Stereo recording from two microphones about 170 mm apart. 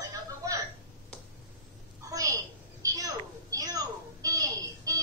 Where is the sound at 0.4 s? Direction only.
20° right (ahead or behind).